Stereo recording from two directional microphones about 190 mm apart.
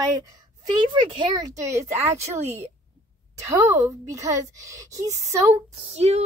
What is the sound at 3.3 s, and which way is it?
A woman's voice, 15° right (ahead or behind).